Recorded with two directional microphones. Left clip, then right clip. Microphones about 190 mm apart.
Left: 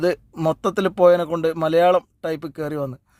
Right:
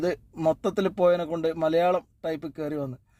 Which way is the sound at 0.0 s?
30° left (ahead or behind).